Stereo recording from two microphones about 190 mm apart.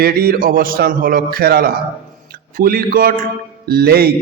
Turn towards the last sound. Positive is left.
turn(degrees=-55)  # may be behind; listen again after turning